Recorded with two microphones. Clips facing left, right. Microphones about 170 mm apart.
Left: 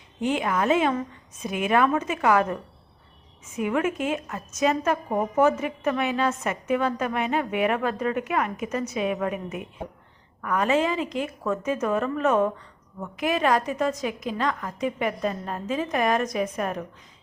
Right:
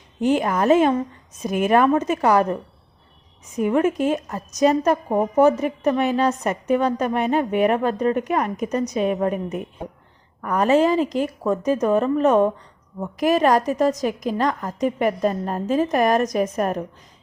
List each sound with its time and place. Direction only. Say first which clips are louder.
0.2 s a woman's voice: right 5 dB; 40° right (ahead or behind)